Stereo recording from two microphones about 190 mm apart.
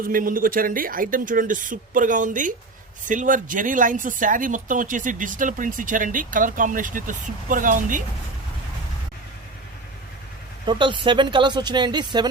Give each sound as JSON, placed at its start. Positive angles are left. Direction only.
{"t": 0.0, "sound": "speech", "side_deg": -45}
{"t": 10.7, "sound": "speech", "side_deg": -25}